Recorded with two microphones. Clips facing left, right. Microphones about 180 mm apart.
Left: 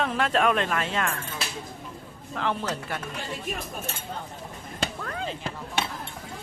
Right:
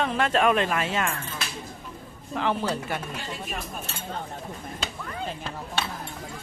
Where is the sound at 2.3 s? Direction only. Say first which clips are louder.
Right 2 dB; 5° right (ahead or behind).